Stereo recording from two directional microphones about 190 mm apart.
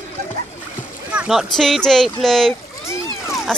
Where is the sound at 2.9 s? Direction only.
15° left (ahead or behind).